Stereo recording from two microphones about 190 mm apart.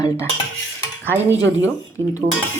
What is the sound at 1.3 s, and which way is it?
Speech, 85° right.